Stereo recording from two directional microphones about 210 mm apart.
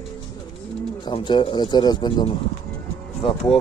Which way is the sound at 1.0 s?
20° left (ahead or behind).